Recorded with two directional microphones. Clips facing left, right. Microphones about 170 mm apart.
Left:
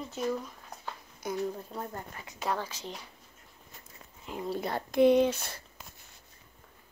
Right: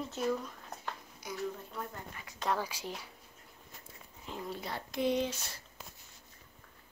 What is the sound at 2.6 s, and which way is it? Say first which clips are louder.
Speech: even; 10° right (ahead or behind).